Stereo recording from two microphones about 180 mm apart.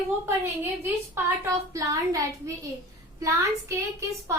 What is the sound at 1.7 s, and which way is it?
A woman's voice, 20° right (ahead or behind).